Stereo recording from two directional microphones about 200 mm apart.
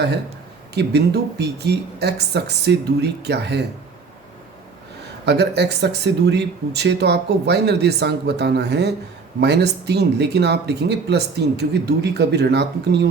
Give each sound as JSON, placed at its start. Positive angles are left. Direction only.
{"t": 0.7, "sound": "speech", "side_deg": -55}
{"t": 5.2, "sound": "speech", "side_deg": -55}